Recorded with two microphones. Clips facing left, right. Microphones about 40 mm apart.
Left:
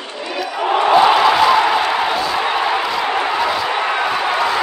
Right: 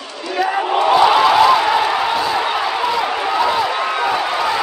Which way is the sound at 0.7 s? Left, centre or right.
Centre.